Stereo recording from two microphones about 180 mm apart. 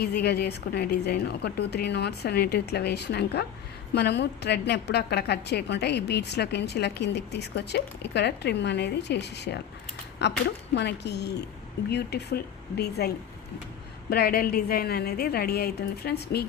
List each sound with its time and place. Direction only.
0.0 s a woman's voice: 65° left (ahead or behind)